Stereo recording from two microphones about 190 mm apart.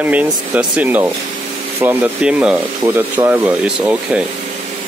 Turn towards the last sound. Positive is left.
turn(degrees=-5)  # may be behind; listen again after turning